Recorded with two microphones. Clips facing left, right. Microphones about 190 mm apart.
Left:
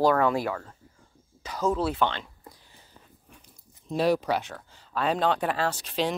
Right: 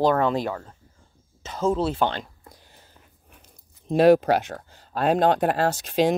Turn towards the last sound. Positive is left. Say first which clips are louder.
# right 7 dB
turn(degrees=-45)  # may be behind; listen again after turning